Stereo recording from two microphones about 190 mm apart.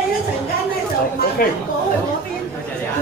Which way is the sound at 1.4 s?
50° left (ahead or behind).